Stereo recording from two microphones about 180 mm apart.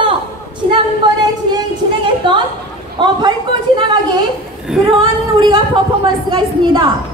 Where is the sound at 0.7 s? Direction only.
25° right (ahead or behind).